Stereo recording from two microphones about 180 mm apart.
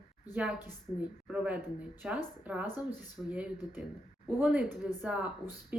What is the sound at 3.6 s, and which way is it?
Speech, 20° left (ahead or behind).